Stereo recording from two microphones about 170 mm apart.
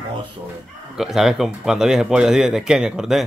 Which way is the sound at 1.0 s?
Centre (ahead or behind).